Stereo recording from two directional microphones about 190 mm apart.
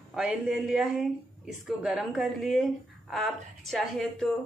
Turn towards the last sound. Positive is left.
turn(degrees=0)  # may be behind; listen again after turning